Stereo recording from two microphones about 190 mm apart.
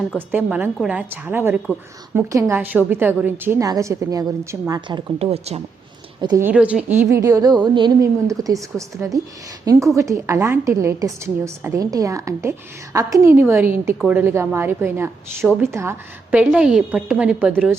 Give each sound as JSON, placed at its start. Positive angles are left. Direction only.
{"t": 0.2, "sound": "a woman's voice", "side_deg": -10}
{"t": 6.4, "sound": "a woman's voice", "side_deg": -5}